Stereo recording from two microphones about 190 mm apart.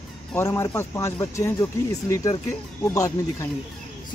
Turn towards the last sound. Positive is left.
turn(degrees=15)  # may be behind; listen again after turning